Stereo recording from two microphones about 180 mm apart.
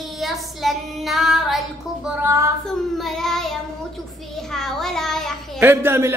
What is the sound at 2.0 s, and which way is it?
Speech, 15° right (ahead or behind).